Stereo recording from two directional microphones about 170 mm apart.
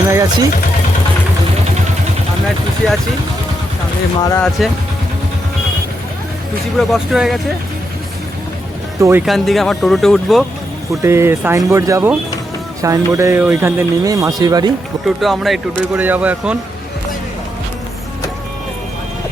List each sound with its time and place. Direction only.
0.1 s a sound: 20° right (ahead or behind)
4.2 s speech: 20° left (ahead or behind)
6.7 s speech: centre (ahead or behind)
9.0 s speech: 15° right (ahead or behind)
9.2 s speech: centre (ahead or behind)
11.0 s speech: 15° right (ahead or behind)
15.0 s speech: centre (ahead or behind)